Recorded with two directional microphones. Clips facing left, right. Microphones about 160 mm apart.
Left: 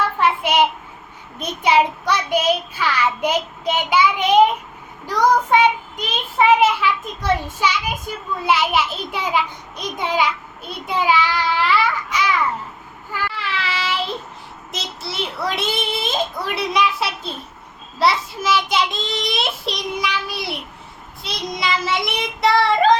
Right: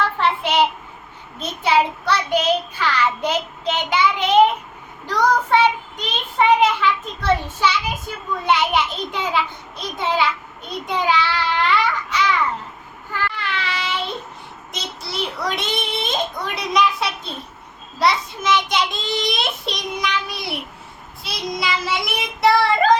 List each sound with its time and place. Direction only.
0.2 s child singing: 10° left (ahead or behind)
8.4 s a child's voice: 5° left (ahead or behind)
9.3 s child singing: 15° left (ahead or behind)
10.8 s a child's voice: 5° left (ahead or behind)
13.1 s child singing: 5° left (ahead or behind)
14.7 s a child's voice: centre (ahead or behind)